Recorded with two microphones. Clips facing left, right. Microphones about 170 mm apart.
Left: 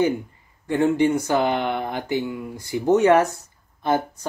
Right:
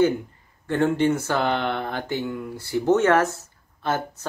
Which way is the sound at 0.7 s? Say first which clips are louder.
Left 2 dB; 15° left (ahead or behind).